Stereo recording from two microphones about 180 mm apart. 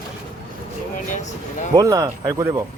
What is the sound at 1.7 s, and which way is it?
Speech, 20° right (ahead or behind).